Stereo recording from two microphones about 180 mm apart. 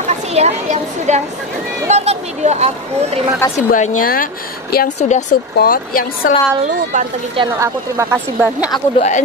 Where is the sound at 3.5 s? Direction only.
45° left (ahead or behind).